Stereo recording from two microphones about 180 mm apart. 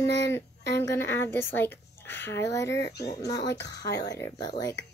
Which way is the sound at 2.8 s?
65° left (ahead or behind).